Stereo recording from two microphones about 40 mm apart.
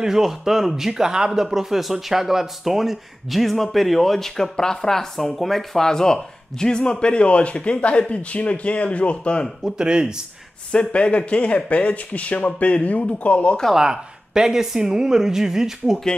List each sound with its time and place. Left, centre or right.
0.0 s speech: centre; by 9.5 s left
9.8 s speech: right
10.7 s speech: left
13.7 s speech: centre